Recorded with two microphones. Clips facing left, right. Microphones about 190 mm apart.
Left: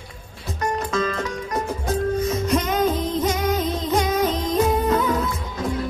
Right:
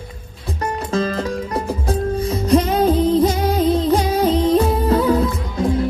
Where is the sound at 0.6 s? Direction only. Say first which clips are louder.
Right 2 dB; 35° right (ahead or behind).